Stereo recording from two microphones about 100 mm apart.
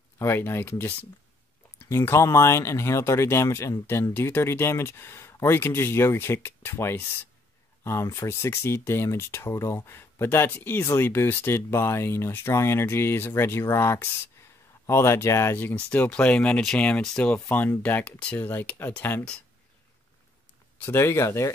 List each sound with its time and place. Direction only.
0.2 s speech: 25° left (ahead or behind)
20.7 s speech: 25° left (ahead or behind)